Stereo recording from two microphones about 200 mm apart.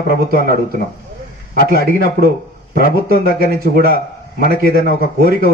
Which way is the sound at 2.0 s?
50° right (ahead or behind).